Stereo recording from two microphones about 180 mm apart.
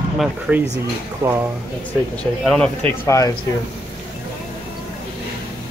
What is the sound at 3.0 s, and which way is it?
Speech, 15° left (ahead or behind).